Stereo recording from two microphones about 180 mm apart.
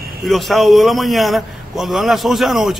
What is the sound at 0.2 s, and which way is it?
A man's voice, centre (ahead or behind).